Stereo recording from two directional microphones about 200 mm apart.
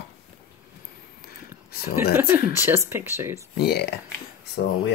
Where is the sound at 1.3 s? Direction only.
50° left (ahead or behind).